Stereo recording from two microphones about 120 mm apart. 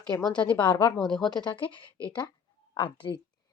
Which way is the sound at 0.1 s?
30° left (ahead or behind).